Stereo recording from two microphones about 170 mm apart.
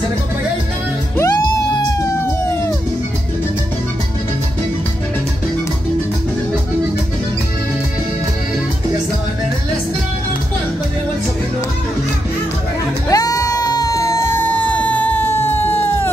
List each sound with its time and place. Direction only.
1.1 s music: 20° left (ahead or behind)
13.1 s music: 20° left (ahead or behind)